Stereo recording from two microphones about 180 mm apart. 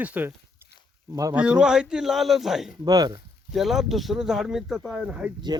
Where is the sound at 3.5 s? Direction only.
Centre (ahead or behind).